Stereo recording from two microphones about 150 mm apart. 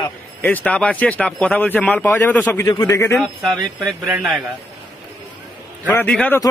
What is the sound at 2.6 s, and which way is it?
Speech, 25° left (ahead or behind).